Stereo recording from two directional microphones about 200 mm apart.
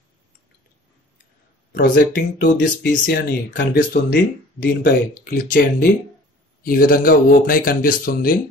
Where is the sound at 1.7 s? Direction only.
50° left (ahead or behind).